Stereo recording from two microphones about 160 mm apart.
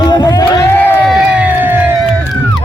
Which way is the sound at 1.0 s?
5° right (ahead or behind).